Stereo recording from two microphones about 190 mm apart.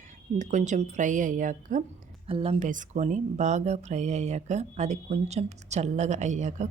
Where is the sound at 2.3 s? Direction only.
30° right (ahead or behind).